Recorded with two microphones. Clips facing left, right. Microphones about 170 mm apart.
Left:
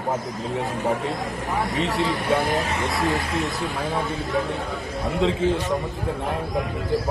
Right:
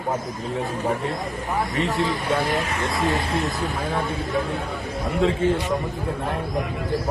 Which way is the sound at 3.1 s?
30° right (ahead or behind).